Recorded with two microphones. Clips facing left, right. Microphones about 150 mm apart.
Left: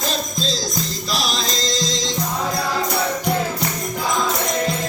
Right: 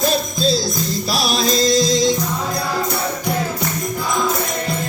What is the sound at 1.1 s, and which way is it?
Music, 10° right (ahead or behind).